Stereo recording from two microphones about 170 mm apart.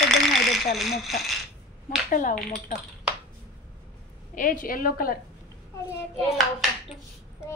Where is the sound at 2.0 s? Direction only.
50° left (ahead or behind).